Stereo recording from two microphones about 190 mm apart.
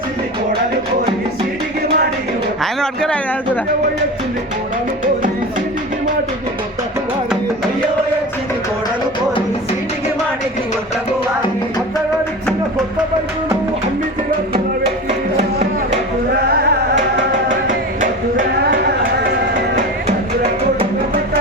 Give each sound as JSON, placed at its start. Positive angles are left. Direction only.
{"t": 2.8, "sound": "speech", "side_deg": 5}
{"t": 16.5, "sound": "music", "side_deg": -55}
{"t": 17.7, "sound": "music", "side_deg": -45}